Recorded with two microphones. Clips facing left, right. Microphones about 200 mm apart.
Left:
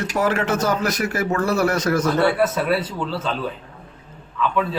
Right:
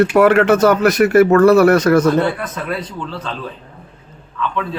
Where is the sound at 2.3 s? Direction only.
10° left (ahead or behind).